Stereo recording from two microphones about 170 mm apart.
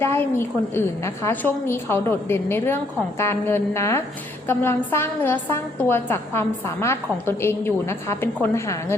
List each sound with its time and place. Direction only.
0.0 s a woman's voice: 15° left (ahead or behind)